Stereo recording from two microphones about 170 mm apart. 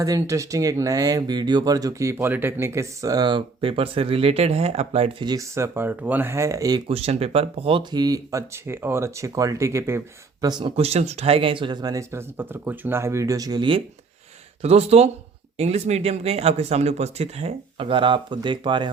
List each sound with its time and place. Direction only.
0.0 s speech: 20° right (ahead or behind); by 5.1 s 40° right (ahead or behind)
5.2 s speech: 20° right (ahead or behind)
6.8 s speech: 35° right (ahead or behind); by 10.0 s 15° right (ahead or behind)
10.4 s speech: 25° right (ahead or behind)